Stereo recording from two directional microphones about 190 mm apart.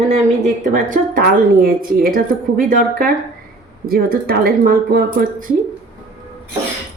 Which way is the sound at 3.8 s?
50° right (ahead or behind).